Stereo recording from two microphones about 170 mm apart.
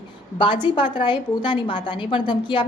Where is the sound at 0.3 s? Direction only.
30° left (ahead or behind).